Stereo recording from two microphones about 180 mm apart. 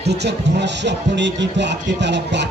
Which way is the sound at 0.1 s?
70° right (ahead or behind).